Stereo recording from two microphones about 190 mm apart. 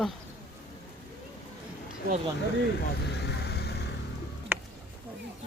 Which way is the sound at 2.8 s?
60° left (ahead or behind).